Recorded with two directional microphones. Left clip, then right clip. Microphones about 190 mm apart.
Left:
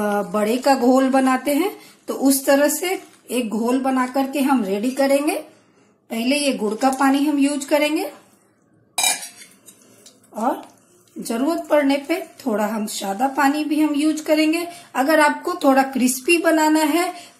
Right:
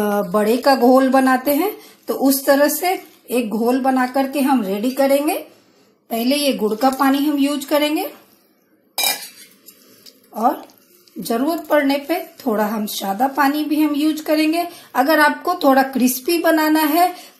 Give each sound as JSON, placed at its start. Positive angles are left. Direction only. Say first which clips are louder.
{"t": 0.0, "sound": "a woman's voice", "louder": "right 3 dB", "side_deg": -20}
{"t": 6.0, "sound": "a woman's voice", "louder": "right 2 dB", "side_deg": -20}
{"t": 11.2, "sound": "a woman's voice", "louder": "right 2 dB", "side_deg": -15}